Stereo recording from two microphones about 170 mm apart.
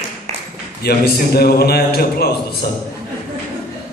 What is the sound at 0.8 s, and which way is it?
A man's voice, 65° left (ahead or behind).